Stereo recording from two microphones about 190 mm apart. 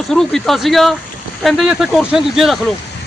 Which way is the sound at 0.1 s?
Centre (ahead or behind).